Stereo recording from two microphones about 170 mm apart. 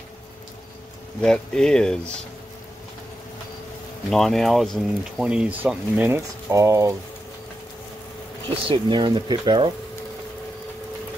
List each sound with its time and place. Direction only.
1.2 s speech: 5° left (ahead or behind)
4.1 s speech: centre (ahead or behind); by 7.0 s 20° right (ahead or behind)
8.6 s speech: 25° right (ahead or behind)